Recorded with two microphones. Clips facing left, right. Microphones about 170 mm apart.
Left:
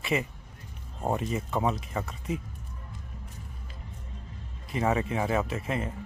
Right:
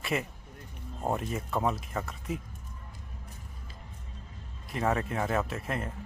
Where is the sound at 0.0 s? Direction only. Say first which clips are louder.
Left 3 dB; centre (ahead or behind).